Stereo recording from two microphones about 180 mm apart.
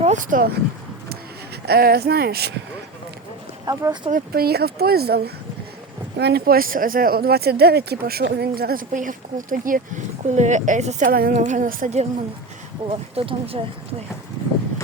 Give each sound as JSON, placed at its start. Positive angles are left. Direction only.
{"t": 0.0, "sound": "speech", "side_deg": -45}
{"t": 1.6, "sound": "speech", "side_deg": -60}
{"t": 3.7, "sound": "speech", "side_deg": -20}
{"t": 4.1, "sound": "speech", "side_deg": -60}
{"t": 11.1, "sound": "speech", "side_deg": -55}
{"t": 12.9, "sound": "speech", "side_deg": -30}